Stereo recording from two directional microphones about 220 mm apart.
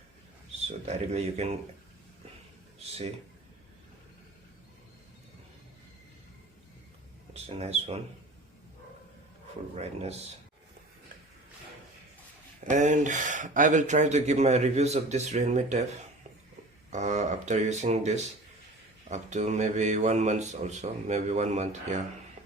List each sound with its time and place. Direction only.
0.9 s speech: 30° right (ahead or behind)
7.3 s speech: 30° right (ahead or behind)
9.7 s speech: 30° right (ahead or behind)
12.7 s speech: 35° right (ahead or behind)
16.9 s speech: 30° right (ahead or behind)